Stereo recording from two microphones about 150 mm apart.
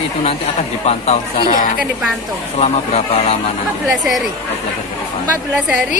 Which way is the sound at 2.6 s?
45° left (ahead or behind).